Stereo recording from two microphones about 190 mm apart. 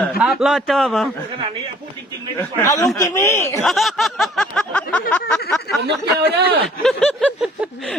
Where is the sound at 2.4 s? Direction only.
15° left (ahead or behind).